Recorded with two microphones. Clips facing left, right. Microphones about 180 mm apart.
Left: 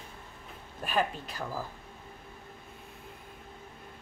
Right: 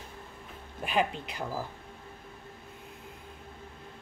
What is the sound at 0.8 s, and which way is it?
Speech, 15° right (ahead or behind).